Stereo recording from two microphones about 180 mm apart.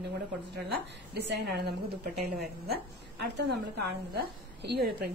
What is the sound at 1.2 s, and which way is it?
Speech, 65° right (ahead or behind).